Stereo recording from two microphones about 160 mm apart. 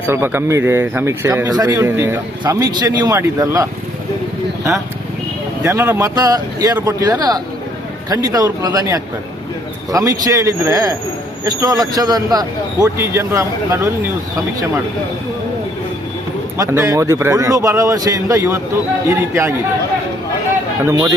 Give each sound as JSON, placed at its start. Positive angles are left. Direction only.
{"t": 0.0, "sound": "a man's voice", "side_deg": -15}
{"t": 5.6, "sound": "a man's voice", "side_deg": -15}
{"t": 16.6, "sound": "a man's voice", "side_deg": -20}